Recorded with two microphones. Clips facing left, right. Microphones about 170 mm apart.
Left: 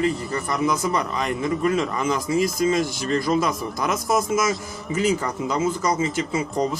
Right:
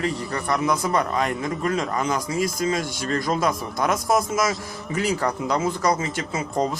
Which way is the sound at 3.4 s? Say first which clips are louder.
Right 1 dB; 50° right (ahead or behind).